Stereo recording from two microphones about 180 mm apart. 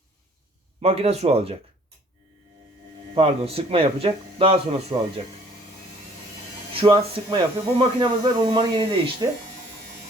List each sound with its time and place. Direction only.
0.8 s speech: 35° right (ahead or behind)
3.2 s speech: 35° right (ahead or behind)
6.7 s speech: 25° right (ahead or behind)